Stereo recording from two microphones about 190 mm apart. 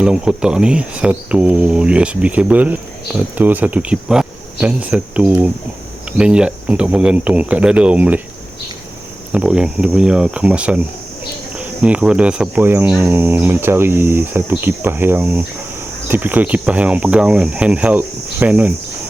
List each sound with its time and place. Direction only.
0.0 s speech: 5° right (ahead or behind)
3.3 s cricket: 10° right (ahead or behind)
9.3 s speech: 5° right (ahead or behind)
11.5 s cricket: 5° right (ahead or behind)